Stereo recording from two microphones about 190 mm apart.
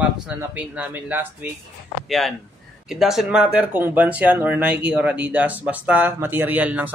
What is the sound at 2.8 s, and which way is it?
Speech, centre (ahead or behind).